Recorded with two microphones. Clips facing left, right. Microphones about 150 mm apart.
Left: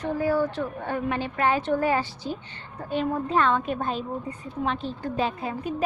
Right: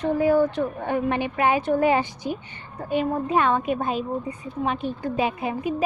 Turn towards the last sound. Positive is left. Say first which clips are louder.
# right 3 dB
turn(degrees=-10)  # may be behind; listen again after turning